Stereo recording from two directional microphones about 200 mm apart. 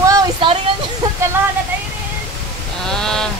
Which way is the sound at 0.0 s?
20° right (ahead or behind).